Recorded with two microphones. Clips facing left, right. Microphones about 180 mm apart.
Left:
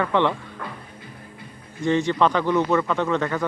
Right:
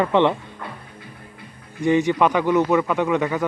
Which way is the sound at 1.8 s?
15° right (ahead or behind).